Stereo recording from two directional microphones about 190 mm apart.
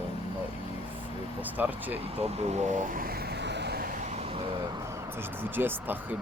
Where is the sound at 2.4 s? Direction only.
45° right (ahead or behind); by 3.8 s 60° right (ahead or behind).